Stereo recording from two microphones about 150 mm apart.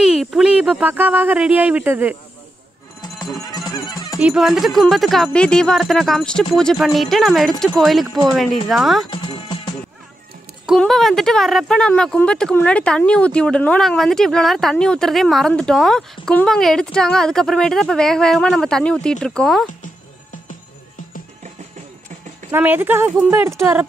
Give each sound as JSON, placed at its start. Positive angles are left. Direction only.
{"t": 0.0, "sound": "speech", "side_deg": 0}
{"t": 3.5, "sound": "music", "side_deg": 25}
{"t": 4.2, "sound": "speech", "side_deg": -5}
{"t": 10.7, "sound": "speech", "side_deg": 0}
{"t": 22.5, "sound": "speech", "side_deg": -15}